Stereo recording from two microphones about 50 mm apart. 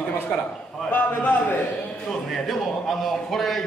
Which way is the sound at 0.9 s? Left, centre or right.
Left.